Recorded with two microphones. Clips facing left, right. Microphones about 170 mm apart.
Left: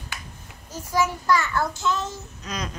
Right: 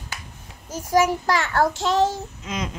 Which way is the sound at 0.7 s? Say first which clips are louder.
Right 5 dB; 90° right.